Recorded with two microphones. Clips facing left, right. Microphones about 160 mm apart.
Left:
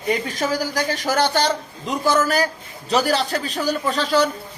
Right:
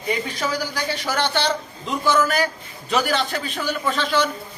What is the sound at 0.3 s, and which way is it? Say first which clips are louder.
Speech: left 3 dB; 45° left (ahead or behind).